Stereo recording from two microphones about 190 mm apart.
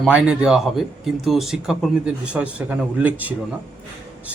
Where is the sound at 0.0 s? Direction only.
5° right (ahead or behind).